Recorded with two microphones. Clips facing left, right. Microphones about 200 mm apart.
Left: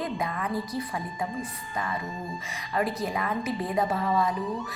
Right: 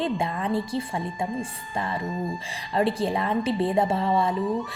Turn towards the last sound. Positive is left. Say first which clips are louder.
# right 3 dB
turn(degrees=-30)  # may be behind; listen again after turning